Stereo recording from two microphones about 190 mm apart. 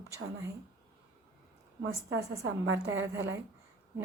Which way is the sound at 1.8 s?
70° right (ahead or behind).